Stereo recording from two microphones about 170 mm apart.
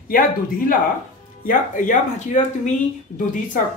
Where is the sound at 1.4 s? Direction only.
50° left (ahead or behind).